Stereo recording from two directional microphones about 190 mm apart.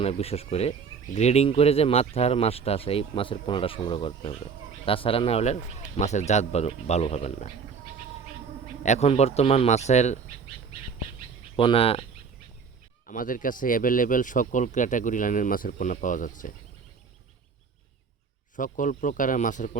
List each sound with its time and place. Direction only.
0.0 s speech: 30° left (ahead or behind)
8.8 s speech: 35° left (ahead or behind)
11.5 s speech: 30° left (ahead or behind)
13.1 s speech: 45° left (ahead or behind)
18.5 s speech: 45° left (ahead or behind)